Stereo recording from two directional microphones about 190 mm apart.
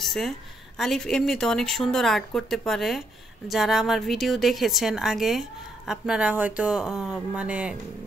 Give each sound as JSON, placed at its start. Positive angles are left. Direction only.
{"t": 0.0, "sound": "a woman's voice", "side_deg": 0}